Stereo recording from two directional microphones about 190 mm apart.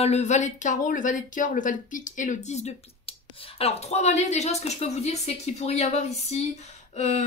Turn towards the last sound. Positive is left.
turn(degrees=35)  # may be behind; listen again after turning